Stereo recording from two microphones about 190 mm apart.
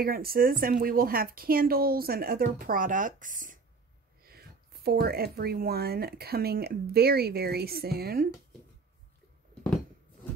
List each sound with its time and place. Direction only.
0.0 s speech: 50° right (ahead or behind)